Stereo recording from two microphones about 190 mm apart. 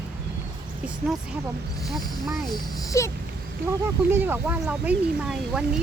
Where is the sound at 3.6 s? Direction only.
10° right (ahead or behind).